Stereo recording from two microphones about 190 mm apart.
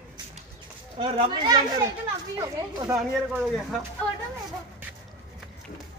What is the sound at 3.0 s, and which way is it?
Speech, centre (ahead or behind).